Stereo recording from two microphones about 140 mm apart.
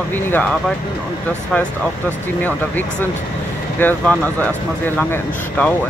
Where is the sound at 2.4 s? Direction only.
15° left (ahead or behind).